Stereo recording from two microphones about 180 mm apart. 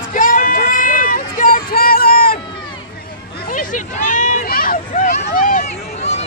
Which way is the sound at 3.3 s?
50° left (ahead or behind).